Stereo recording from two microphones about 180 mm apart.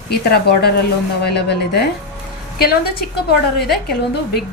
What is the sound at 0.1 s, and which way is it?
A woman's voice, 60° left (ahead or behind).